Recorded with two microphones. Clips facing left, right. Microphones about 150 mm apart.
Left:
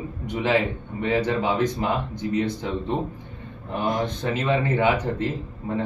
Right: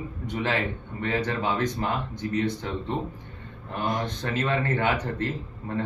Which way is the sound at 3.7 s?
15° left (ahead or behind).